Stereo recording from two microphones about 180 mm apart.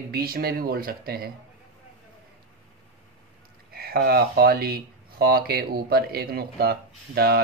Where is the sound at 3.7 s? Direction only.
60° right (ahead or behind).